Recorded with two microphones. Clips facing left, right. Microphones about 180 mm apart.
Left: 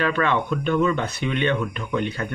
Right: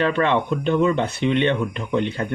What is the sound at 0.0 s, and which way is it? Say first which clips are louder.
Speech: right 3 dB; 25° right (ahead or behind).